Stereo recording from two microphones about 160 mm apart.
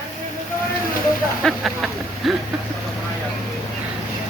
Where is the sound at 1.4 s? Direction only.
Centre (ahead or behind).